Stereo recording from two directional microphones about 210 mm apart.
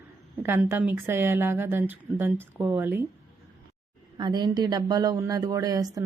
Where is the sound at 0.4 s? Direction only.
10° right (ahead or behind).